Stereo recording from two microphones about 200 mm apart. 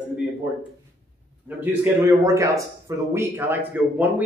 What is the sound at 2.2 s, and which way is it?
Speech, 15° right (ahead or behind).